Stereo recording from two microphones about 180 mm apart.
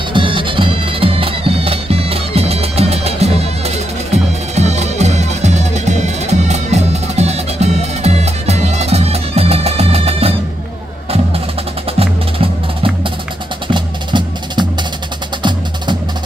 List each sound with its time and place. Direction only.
0.1 s bagpipes: 30° right (ahead or behind)
12.0 s music: 30° right (ahead or behind)